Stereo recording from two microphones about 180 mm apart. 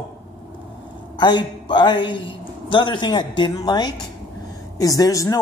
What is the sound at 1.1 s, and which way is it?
Speech, 25° left (ahead or behind).